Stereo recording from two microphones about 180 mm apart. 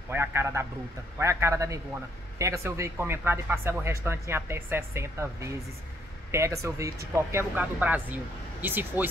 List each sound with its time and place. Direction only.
0.1 s speech: 15° right (ahead or behind)